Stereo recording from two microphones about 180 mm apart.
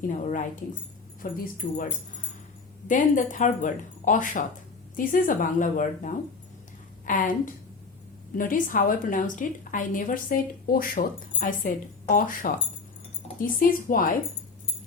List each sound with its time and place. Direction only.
0.1 s a woman's voice: 45° left (ahead or behind)